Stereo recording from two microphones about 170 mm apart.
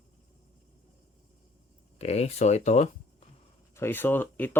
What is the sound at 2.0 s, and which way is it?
Speech, 40° left (ahead or behind).